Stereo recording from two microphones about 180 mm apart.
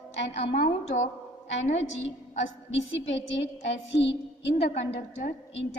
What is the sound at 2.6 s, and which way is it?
A woman's voice, 90° left.